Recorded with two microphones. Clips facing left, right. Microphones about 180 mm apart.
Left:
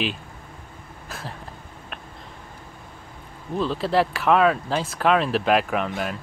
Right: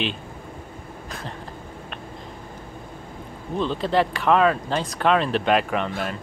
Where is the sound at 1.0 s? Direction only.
5° left (ahead or behind).